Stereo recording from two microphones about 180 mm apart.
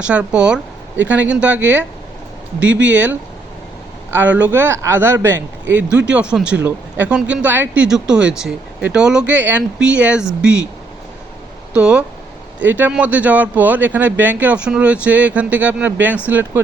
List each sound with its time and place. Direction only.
0.1 s speech: 5° right (ahead or behind)
2.6 s speech: 90° right
4.1 s speech: 10° right (ahead or behind)
11.7 s speech: 5° right (ahead or behind)